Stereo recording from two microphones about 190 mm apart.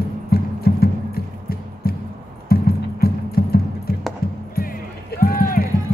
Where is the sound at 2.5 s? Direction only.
55° left (ahead or behind).